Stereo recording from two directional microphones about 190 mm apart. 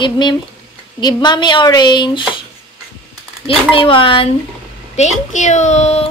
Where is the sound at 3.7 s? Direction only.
30° left (ahead or behind).